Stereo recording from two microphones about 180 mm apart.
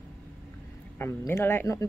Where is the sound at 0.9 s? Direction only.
15° left (ahead or behind).